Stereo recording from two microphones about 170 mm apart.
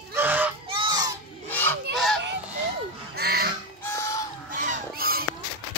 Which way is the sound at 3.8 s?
15° left (ahead or behind).